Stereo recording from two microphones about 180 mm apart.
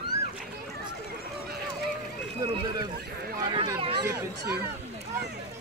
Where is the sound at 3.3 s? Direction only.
20° right (ahead or behind).